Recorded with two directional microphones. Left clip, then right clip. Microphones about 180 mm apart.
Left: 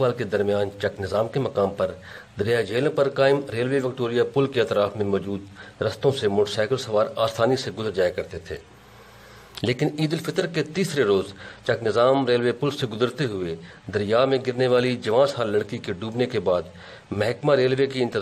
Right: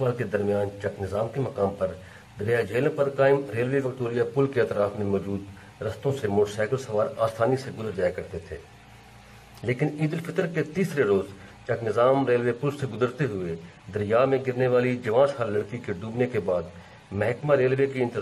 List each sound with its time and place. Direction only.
0.0 s speech: 40° left (ahead or behind)
9.6 s a man's voice: 45° left (ahead or behind)